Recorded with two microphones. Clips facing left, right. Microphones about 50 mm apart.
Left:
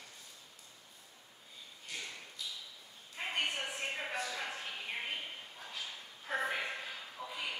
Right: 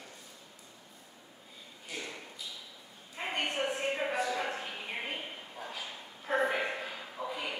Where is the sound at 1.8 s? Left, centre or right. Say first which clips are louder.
Right 4 dB; centre.